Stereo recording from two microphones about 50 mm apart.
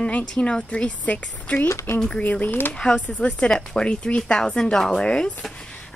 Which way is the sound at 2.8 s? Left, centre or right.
Left.